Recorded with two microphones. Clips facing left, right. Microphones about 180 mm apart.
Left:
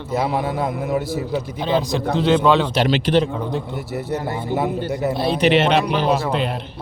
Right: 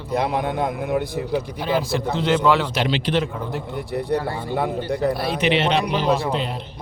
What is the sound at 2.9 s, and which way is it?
Speech, 45° left (ahead or behind).